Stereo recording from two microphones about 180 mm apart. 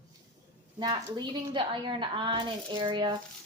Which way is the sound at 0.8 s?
25° right (ahead or behind).